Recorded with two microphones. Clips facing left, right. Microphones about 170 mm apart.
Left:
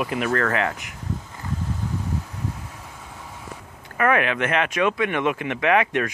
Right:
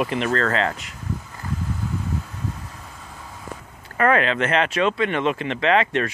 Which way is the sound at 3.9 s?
10° left (ahead or behind).